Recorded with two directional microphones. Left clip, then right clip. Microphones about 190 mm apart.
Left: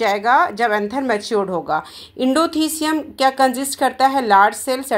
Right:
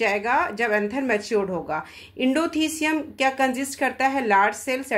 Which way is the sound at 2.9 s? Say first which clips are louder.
Left 6 dB; 25° left (ahead or behind).